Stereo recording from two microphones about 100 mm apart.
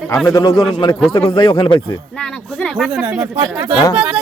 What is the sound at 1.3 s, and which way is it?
Speech, 45° left (ahead or behind).